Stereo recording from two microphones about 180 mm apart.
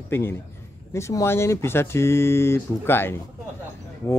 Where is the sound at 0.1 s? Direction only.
15° left (ahead or behind).